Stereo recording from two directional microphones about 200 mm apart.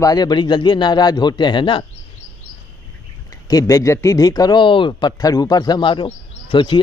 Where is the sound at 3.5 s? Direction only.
15° left (ahead or behind).